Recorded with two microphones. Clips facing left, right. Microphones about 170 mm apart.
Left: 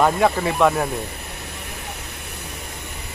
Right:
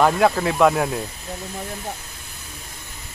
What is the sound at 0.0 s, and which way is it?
Speech, centre (ahead or behind).